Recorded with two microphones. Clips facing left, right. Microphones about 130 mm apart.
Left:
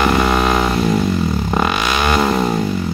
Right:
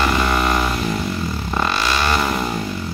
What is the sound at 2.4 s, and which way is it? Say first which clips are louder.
Music: left 6 dB; 20° left (ahead or behind).